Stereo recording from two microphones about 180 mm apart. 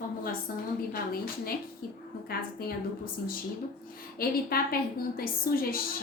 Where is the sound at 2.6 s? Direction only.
55° left (ahead or behind).